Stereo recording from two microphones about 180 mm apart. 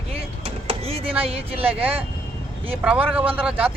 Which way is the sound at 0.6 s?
35° right (ahead or behind).